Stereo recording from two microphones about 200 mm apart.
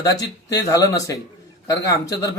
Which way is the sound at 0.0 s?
15° left (ahead or behind).